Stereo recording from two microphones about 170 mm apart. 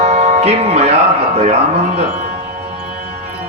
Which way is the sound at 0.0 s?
40° right (ahead or behind).